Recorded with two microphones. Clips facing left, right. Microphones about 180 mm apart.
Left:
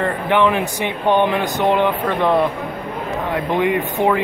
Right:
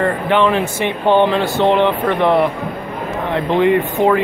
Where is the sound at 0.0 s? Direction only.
15° left (ahead or behind).